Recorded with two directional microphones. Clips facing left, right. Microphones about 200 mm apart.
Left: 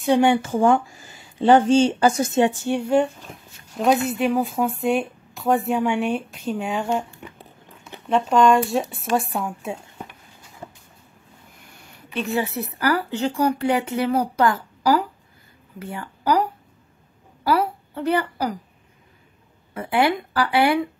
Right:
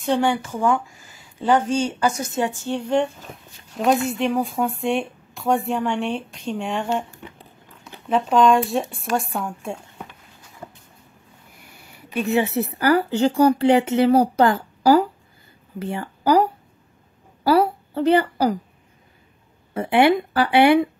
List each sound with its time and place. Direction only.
0.0 s a woman's voice: 15° left (ahead or behind)
2.6 s speech: 10° left (ahead or behind)
8.1 s speech: centre (ahead or behind)
11.7 s a woman's voice: 5° right (ahead or behind); by 18.6 s 30° right (ahead or behind)
19.7 s speech: 25° right (ahead or behind)